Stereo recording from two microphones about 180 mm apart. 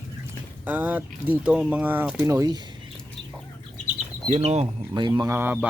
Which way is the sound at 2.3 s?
20° right (ahead or behind).